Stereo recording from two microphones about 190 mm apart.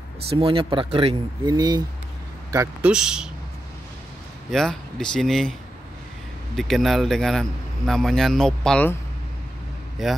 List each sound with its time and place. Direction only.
0.3 s speech: 30° right (ahead or behind)
2.9 s speech: 5° right (ahead or behind)
4.5 s speech: centre (ahead or behind)
10.0 s speech: centre (ahead or behind)